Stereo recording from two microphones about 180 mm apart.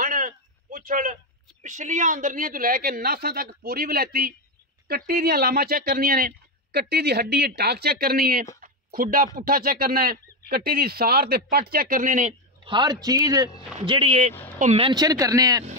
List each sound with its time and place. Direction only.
0.0 s a sound: 50° right (ahead or behind)
1.6 s speech: 45° right (ahead or behind)
12.6 s speech: 25° right (ahead or behind)
13.7 s speech: 30° right (ahead or behind)